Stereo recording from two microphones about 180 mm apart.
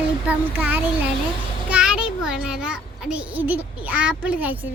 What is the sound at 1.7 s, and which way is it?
A child's voice, 5° right (ahead or behind).